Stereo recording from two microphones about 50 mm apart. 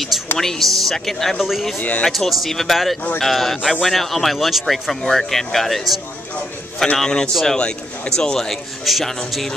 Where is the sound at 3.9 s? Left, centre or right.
Centre.